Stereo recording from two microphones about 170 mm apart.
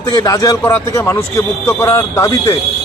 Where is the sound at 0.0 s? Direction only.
20° left (ahead or behind).